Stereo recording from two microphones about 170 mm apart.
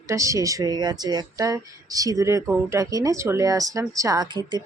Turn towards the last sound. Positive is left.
turn(degrees=-25)  # may be behind; listen again after turning